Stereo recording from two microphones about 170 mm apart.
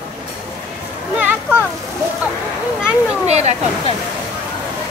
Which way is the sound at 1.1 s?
10° right (ahead or behind).